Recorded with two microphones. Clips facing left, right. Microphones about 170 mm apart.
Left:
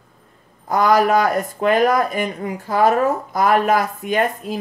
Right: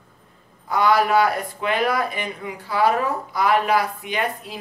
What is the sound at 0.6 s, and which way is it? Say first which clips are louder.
Speech: left 3 dB; 45° left (ahead or behind).